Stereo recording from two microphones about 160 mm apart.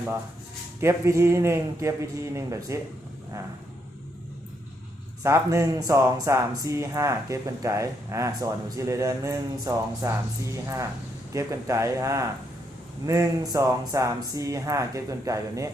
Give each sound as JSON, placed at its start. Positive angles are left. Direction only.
{"t": 0.8, "sound": "speech", "side_deg": -15}
{"t": 5.2, "sound": "speech", "side_deg": -15}